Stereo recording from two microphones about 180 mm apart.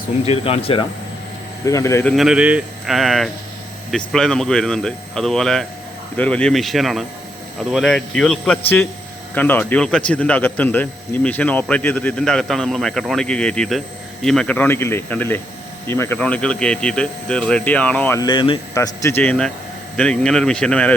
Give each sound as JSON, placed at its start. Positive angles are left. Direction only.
{"t": 0.3, "sound": "speech", "side_deg": 35}
{"t": 1.6, "sound": "speech", "side_deg": 20}
{"t": 2.0, "sound": "speech", "side_deg": 0}
{"t": 18.2, "sound": "speech", "side_deg": 25}
{"t": 18.7, "sound": "speech", "side_deg": 15}